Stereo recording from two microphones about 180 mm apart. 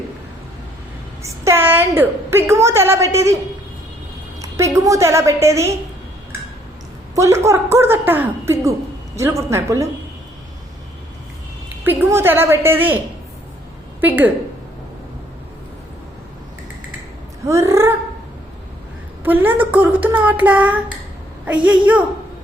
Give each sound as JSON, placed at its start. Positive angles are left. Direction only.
{"t": 1.2, "sound": "a woman's voice", "side_deg": -15}
{"t": 4.4, "sound": "a woman's voice", "side_deg": -15}
{"t": 7.2, "sound": "a woman's voice", "side_deg": -15}
{"t": 11.9, "sound": "a woman's voice", "side_deg": -15}
{"t": 14.0, "sound": "a woman's voice", "side_deg": -10}
{"t": 17.4, "sound": "a woman's voice", "side_deg": -15}
{"t": 19.2, "sound": "a woman's voice", "side_deg": -10}